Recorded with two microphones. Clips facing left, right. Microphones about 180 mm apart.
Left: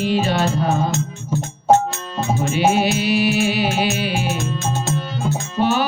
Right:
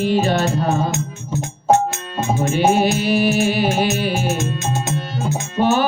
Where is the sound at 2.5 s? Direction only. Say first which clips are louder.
Right 2 dB; 45° right (ahead or behind).